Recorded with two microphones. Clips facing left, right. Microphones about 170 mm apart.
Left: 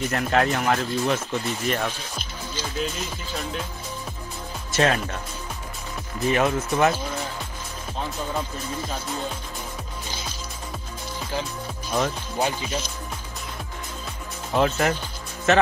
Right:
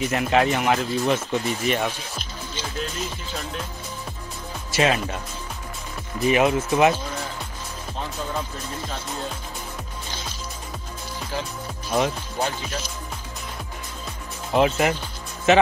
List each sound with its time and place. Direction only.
0.0 s speech: 5° right (ahead or behind)
4.7 s speech: centre (ahead or behind)
6.2 s speech: 5° right (ahead or behind)
11.9 s speech: centre (ahead or behind)
14.5 s speech: 5° right (ahead or behind)